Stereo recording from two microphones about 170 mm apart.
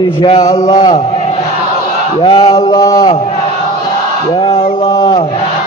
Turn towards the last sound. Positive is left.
turn(degrees=30)  # may be behind; listen again after turning